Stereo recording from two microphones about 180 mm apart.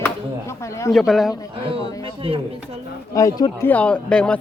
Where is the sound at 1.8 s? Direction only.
20° left (ahead or behind).